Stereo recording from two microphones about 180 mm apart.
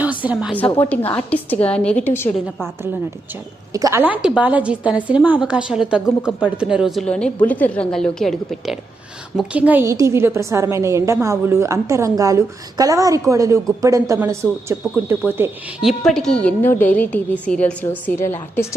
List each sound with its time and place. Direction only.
0.0 s a sound: 10° right (ahead or behind)
0.5 s a woman's voice: 10° left (ahead or behind)
3.7 s a woman's voice: 20° right (ahead or behind)
15.9 s a woman's voice: 5° left (ahead or behind)